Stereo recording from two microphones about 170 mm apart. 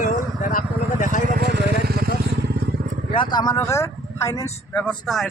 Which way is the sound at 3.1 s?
30° left (ahead or behind).